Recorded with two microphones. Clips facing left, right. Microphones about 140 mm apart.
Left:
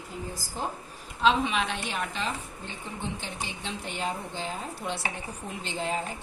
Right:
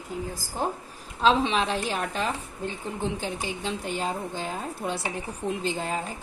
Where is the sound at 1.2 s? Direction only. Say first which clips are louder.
Right 2 dB; 35° right (ahead or behind).